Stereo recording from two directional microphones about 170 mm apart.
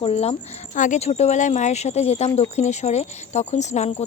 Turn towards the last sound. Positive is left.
turn(degrees=40)  # may be behind; listen again after turning